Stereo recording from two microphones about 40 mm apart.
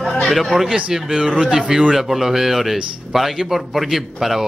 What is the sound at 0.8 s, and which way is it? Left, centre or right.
Speech, centre.